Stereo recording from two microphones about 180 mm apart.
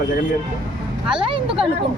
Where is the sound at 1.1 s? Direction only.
30° right (ahead or behind).